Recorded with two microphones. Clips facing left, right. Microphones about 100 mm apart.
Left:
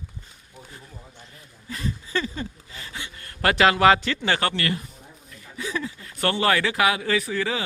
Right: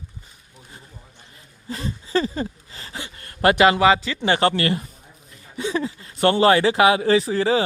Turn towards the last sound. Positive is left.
turn(degrees=-35)  # may be behind; listen again after turning